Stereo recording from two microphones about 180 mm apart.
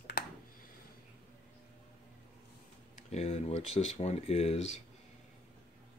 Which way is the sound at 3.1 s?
35° left (ahead or behind).